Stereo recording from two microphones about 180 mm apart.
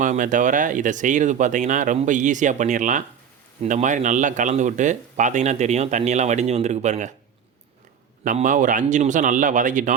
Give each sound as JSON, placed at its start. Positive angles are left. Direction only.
{"t": 0.0, "sound": "speech", "side_deg": -45}
{"t": 8.2, "sound": "speech", "side_deg": -45}